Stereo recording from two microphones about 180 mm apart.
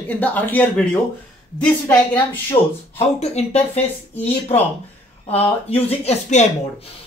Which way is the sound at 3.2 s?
35° left (ahead or behind).